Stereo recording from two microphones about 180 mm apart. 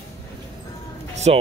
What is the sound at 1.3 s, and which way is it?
Speech, 35° right (ahead or behind).